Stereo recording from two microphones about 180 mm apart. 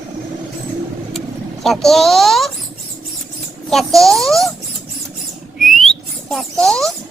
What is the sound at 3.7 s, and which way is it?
Speech, centre (ahead or behind).